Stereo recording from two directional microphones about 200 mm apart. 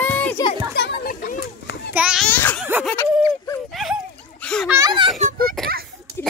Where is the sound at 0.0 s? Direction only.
10° left (ahead or behind).